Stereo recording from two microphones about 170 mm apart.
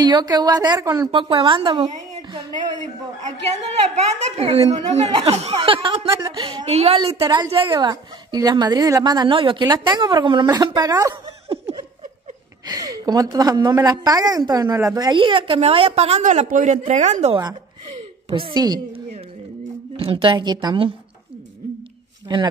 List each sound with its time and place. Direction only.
0.0 s a woman's voice: 25° right (ahead or behind)
1.1 s a woman's voice: 30° right (ahead or behind)
3.9 s a woman's voice: 35° right (ahead or behind)
6.1 s a woman's voice: 20° right (ahead or behind)
11.4 s laughter: 35° right (ahead or behind)
12.6 s a woman's voice: 20° right (ahead or behind); by 17.4 s 40° right (ahead or behind)
18.3 s a woman's voice: 30° right (ahead or behind)
20.0 s a woman's voice: 30° right (ahead or behind)
22.3 s a woman's voice: 25° right (ahead or behind)